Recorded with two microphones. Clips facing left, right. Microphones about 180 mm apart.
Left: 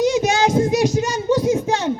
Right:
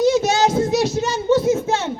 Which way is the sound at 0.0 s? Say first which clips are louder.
Right 1 dB; 15° left (ahead or behind).